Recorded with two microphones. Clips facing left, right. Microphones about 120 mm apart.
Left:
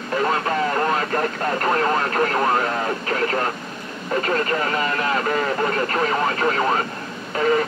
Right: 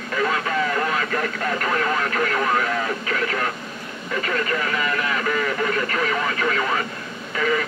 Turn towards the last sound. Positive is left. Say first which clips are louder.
# left 3 dB
turn(degrees=40)  # may be behind; listen again after turning